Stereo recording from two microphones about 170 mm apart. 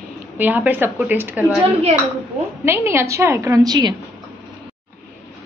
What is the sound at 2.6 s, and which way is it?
A woman's voice, 15° right (ahead or behind).